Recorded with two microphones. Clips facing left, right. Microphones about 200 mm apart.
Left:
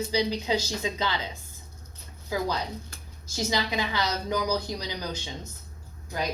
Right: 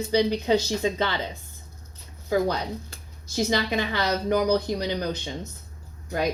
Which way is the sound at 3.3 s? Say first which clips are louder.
Right 4 dB; 55° right (ahead or behind).